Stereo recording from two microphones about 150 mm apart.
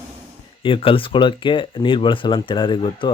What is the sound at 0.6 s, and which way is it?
Speech, 35° left (ahead or behind).